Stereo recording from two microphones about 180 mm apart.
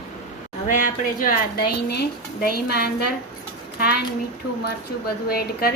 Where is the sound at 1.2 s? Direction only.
55° left (ahead or behind).